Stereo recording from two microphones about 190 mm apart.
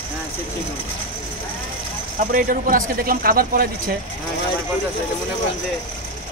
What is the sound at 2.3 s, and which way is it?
Speech, 50° right (ahead or behind).